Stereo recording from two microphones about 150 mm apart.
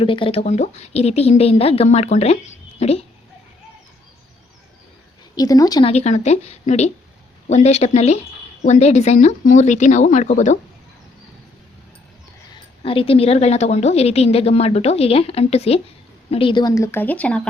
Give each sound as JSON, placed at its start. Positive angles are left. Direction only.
{"t": 0.0, "sound": "a woman's voice", "side_deg": 35}
{"t": 5.4, "sound": "speech", "side_deg": 25}
{"t": 5.8, "sound": "a woman's voice", "side_deg": 45}
{"t": 12.8, "sound": "a woman's voice", "side_deg": 40}